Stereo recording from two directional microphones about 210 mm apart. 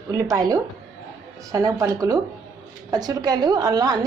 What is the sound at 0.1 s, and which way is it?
A woman's voice, 15° right (ahead or behind).